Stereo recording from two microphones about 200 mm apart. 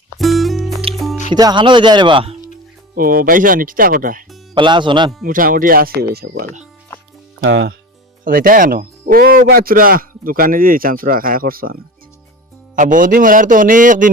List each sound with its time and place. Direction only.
0.2 s music: centre (ahead or behind)
1.3 s speech: 20° right (ahead or behind)
2.9 s a man's voice: 45° right (ahead or behind)
4.5 s speech: 25° right (ahead or behind)
5.2 s a man's voice: 45° right (ahead or behind)
7.4 s speech: 75° right (ahead or behind)
8.2 s a man's voice: 45° right (ahead or behind)